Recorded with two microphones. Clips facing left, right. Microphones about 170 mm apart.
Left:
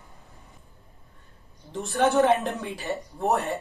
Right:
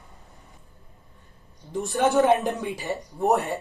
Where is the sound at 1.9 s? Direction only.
15° right (ahead or behind).